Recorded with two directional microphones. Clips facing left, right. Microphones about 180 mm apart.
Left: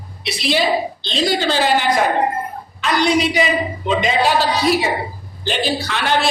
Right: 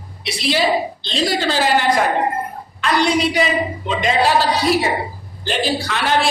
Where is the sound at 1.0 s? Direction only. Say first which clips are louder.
Left 2 dB; centre (ahead or behind).